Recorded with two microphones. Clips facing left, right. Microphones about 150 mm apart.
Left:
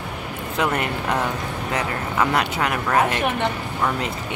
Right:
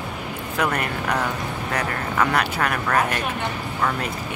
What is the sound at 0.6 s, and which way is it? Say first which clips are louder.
Speech: left 1 dB; 25° left (ahead or behind).